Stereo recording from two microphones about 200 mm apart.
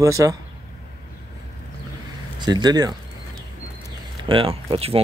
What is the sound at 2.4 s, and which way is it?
Speech, 20° right (ahead or behind).